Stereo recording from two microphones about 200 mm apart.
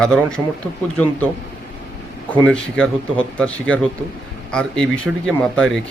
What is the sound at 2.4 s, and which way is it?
Speech, 5° left (ahead or behind).